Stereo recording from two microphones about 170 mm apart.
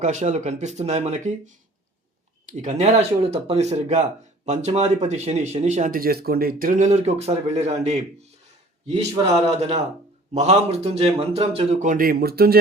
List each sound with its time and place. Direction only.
0.0 s speech: 45° right (ahead or behind)
2.5 s speech: 45° right (ahead or behind)
9.6 s speech: 40° right (ahead or behind); by 12.5 s 65° right (ahead or behind)